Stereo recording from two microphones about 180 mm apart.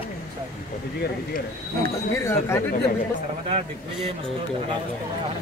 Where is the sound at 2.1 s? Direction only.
15° left (ahead or behind).